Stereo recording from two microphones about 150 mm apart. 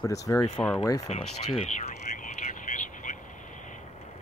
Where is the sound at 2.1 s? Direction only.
60° left (ahead or behind).